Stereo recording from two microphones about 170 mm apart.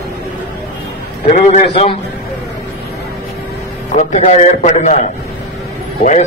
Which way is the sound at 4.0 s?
40° left (ahead or behind).